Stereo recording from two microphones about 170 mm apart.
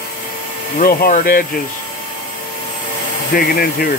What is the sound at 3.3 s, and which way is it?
Speech, 60° left (ahead or behind).